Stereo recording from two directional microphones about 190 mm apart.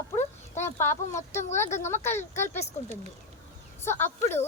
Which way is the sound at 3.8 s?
15° left (ahead or behind).